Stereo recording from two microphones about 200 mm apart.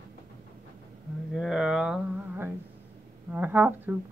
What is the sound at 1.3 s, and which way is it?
Speech, centre (ahead or behind).